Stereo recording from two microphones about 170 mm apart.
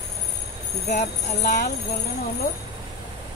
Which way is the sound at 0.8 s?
45° left (ahead or behind).